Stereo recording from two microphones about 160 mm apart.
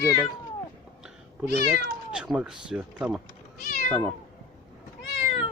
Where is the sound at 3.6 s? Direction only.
60° left (ahead or behind).